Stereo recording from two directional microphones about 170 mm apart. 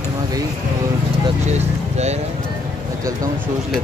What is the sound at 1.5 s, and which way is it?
Vehicle, 40° right (ahead or behind).